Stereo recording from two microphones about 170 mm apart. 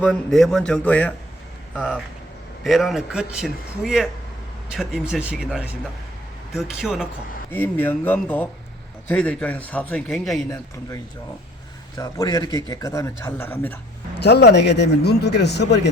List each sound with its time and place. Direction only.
0.0 s a man's voice: 5° left (ahead or behind)
7.5 s a man's voice: 10° left (ahead or behind)
11.9 s a man's voice: 20° left (ahead or behind)
14.2 s speech: 75° left (ahead or behind)